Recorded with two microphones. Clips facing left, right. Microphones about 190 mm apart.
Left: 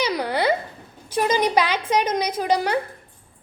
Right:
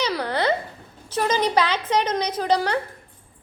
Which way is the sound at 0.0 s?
10° left (ahead or behind).